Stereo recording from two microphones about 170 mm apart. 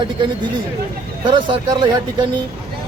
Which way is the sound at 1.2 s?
30° right (ahead or behind).